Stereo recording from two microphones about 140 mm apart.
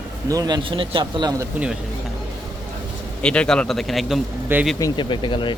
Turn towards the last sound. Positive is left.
turn(degrees=35)  # may be behind; listen again after turning